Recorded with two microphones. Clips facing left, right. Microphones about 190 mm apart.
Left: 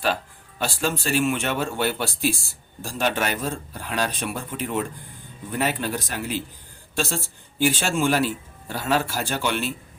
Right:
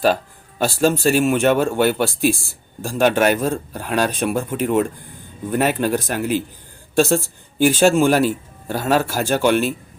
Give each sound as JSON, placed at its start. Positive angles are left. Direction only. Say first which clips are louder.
{"t": 0.6, "sound": "a woman's voice", "louder": "right 9 dB", "side_deg": -45}